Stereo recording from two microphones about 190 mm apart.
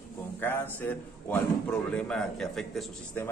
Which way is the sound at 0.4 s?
10° left (ahead or behind).